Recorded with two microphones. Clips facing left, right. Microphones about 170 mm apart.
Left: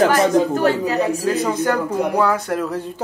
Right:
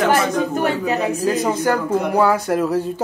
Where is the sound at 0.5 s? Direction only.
20° right (ahead or behind).